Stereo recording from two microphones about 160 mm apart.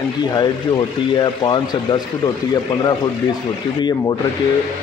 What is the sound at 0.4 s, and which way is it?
Speech, 25° left (ahead or behind).